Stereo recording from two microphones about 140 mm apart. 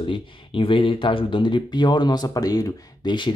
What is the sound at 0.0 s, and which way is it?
Speech, 40° left (ahead or behind).